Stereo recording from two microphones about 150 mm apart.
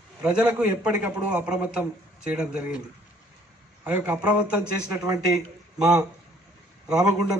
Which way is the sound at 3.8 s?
10° right (ahead or behind).